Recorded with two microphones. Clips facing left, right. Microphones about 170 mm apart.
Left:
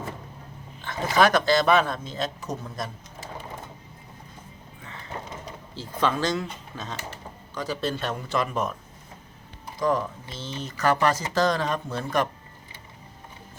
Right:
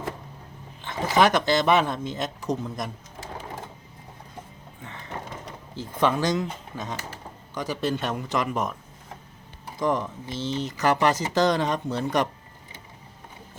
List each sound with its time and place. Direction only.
0.8 s speech: 20° right (ahead or behind)
5.7 s speech: 15° right (ahead or behind)
9.8 s speech: 20° right (ahead or behind)